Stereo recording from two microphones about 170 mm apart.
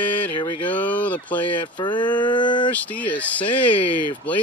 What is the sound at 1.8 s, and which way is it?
Speech, 25° left (ahead or behind).